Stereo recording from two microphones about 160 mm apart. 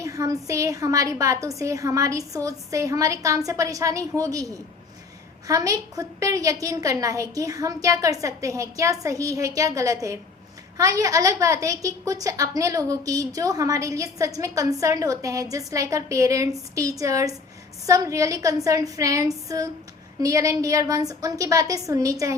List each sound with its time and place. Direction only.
0.0 s a woman's voice: 20° right (ahead or behind)
5.5 s a woman's voice: 20° right (ahead or behind)